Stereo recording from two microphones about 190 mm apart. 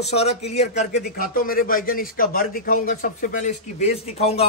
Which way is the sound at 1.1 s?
50° left (ahead or behind).